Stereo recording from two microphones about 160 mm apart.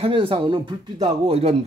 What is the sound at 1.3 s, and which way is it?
Speech, 40° right (ahead or behind).